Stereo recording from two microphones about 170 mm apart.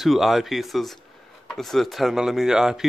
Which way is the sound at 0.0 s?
Centre (ahead or behind).